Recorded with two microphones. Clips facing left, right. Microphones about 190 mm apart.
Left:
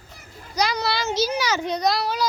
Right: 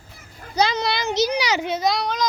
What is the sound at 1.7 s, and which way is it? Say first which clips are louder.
Speech: even; centre (ahead or behind).